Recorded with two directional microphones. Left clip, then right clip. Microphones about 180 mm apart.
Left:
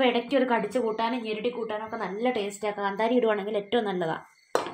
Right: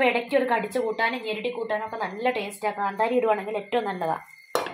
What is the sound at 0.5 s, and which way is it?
A woman's voice, 60° left (ahead or behind).